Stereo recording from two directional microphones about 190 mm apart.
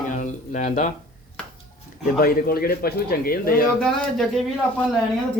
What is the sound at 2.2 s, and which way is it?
Speech, 50° left (ahead or behind).